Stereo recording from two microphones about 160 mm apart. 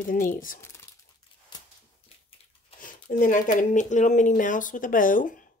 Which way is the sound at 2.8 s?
55° left (ahead or behind).